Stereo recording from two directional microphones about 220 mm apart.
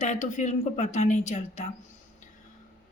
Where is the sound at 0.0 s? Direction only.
35° left (ahead or behind).